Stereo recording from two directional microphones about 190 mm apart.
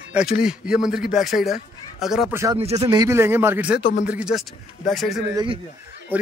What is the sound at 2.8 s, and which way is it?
Speech, 20° right (ahead or behind).